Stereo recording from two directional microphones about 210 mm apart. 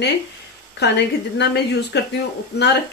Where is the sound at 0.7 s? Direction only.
55° left (ahead or behind).